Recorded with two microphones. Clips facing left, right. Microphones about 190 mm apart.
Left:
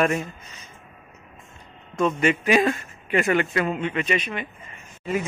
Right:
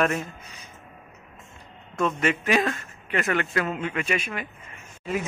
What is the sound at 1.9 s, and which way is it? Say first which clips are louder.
Speech: left 3 dB; centre (ahead or behind).